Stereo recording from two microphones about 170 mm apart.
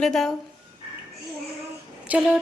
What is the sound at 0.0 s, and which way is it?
Speech, centre (ahead or behind).